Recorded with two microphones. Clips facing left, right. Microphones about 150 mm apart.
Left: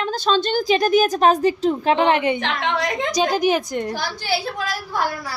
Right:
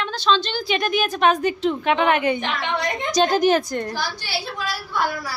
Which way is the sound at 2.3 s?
90° left.